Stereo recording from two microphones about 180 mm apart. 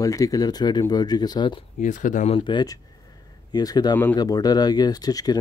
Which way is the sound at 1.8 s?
45° left (ahead or behind).